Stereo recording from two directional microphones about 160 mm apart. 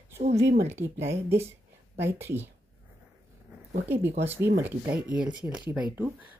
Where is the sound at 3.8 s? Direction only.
15° right (ahead or behind).